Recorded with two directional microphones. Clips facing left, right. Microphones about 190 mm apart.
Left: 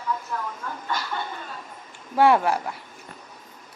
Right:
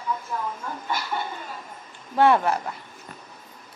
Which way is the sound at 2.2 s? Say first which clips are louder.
Left 1 dB; 10° left (ahead or behind).